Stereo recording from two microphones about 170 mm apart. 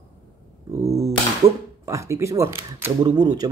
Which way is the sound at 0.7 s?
15° right (ahead or behind).